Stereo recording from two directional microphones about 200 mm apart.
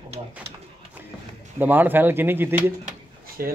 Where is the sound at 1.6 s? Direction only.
10° right (ahead or behind).